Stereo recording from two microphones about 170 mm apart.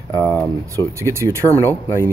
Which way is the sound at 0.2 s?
15° left (ahead or behind).